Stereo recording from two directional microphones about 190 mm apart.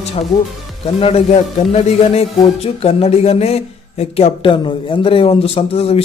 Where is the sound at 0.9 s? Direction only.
30° left (ahead or behind).